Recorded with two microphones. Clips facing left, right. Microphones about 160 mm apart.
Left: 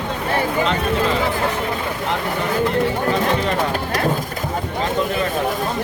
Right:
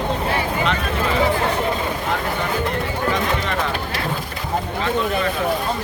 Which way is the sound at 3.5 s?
45° left (ahead or behind).